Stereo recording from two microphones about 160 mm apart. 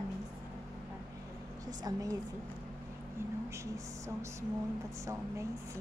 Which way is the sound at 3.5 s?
20° right (ahead or behind).